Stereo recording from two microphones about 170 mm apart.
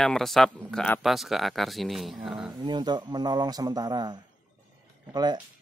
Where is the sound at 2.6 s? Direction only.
25° right (ahead or behind).